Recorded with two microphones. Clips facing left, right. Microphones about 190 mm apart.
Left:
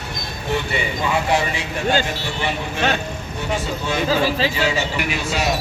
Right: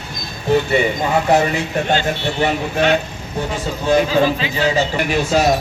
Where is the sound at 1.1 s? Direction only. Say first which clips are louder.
Right 3 dB; 40° right (ahead or behind).